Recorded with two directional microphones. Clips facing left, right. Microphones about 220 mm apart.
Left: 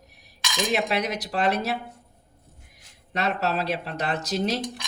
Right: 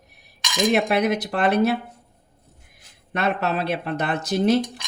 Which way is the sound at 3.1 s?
55° right (ahead or behind).